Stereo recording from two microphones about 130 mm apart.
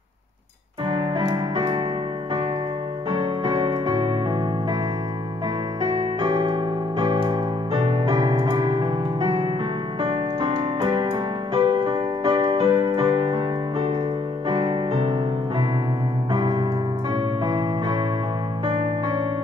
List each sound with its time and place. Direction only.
0.8 s music: 40° right (ahead or behind)
3.1 s music: 35° right (ahead or behind)
5.8 s keyboard: 35° right (ahead or behind)
10.0 s music: 40° right (ahead or behind)
16.3 s piano: 35° right (ahead or behind)
17.1 s music: 35° right (ahead or behind)